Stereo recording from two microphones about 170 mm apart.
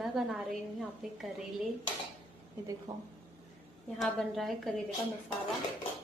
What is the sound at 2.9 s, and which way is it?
Speech, 20° right (ahead or behind).